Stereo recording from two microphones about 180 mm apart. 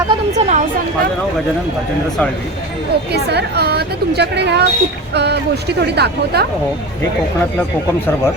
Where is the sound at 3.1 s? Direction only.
65° right (ahead or behind).